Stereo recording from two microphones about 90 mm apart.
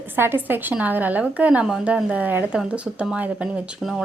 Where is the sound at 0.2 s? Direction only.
25° right (ahead or behind).